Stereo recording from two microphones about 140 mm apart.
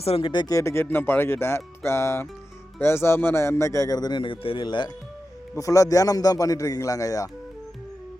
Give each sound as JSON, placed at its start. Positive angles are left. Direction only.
{"t": 0.0, "sound": "speech", "side_deg": 40}